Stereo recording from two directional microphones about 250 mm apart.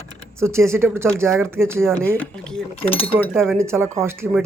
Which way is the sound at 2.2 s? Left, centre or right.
Centre.